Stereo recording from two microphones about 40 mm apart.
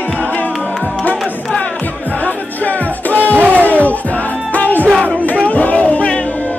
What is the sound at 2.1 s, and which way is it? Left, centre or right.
Music, left.